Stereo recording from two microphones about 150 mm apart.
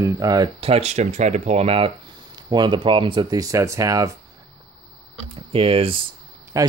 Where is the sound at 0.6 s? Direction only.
45° right (ahead or behind); by 4.1 s 20° right (ahead or behind).